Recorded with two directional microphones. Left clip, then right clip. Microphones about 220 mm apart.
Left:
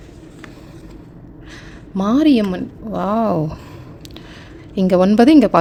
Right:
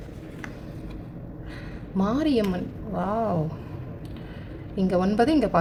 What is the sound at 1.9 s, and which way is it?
A woman's voice, 40° left (ahead or behind).